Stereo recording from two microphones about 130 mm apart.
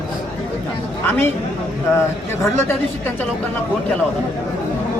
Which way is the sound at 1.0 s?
15° left (ahead or behind).